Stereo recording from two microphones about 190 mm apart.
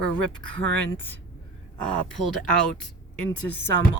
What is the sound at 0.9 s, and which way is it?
A woman's voice, 10° left (ahead or behind).